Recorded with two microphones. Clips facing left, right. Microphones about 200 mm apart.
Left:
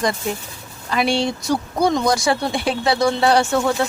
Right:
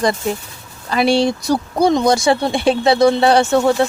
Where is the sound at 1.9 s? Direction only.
25° right (ahead or behind).